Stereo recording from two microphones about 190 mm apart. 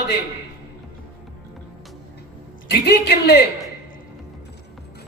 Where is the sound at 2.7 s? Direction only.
60° left (ahead or behind).